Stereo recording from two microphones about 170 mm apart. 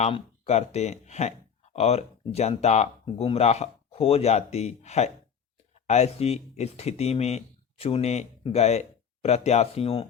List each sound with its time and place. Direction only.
0.0 s speech: 40° left (ahead or behind)